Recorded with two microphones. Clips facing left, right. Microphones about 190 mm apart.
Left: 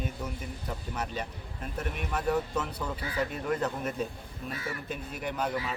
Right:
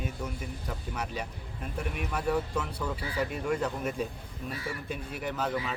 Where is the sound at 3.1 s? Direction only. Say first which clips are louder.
Even; 10° right (ahead or behind).